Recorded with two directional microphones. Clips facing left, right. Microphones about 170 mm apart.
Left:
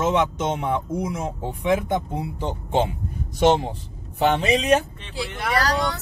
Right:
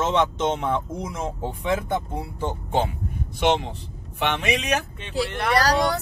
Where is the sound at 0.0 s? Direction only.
10° left (ahead or behind).